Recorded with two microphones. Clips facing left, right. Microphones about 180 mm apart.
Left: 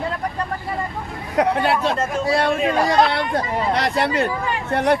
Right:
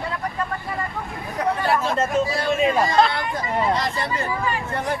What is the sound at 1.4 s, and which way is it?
Speech, 70° left (ahead or behind).